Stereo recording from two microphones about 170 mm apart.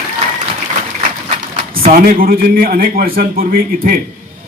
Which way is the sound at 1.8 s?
60° right (ahead or behind).